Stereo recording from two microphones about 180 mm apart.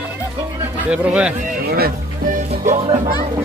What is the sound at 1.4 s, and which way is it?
Music, 55° right (ahead or behind).